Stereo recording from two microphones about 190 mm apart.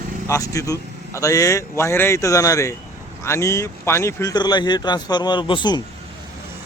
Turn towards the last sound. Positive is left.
turn(degrees=25)  # may be behind; listen again after turning